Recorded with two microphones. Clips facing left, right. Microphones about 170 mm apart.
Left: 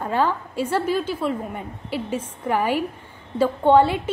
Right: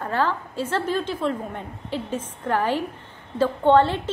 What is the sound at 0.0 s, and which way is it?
A woman's voice, 15° left (ahead or behind).